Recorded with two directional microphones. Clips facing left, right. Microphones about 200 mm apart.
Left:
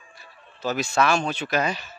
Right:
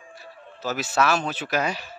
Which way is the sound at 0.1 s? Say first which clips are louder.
Right 8 dB; 5° right (ahead or behind).